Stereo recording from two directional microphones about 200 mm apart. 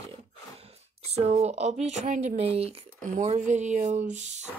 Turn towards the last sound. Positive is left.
turn(degrees=-35)  # may be behind; listen again after turning